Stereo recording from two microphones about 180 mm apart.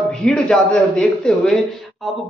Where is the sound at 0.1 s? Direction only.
5° left (ahead or behind).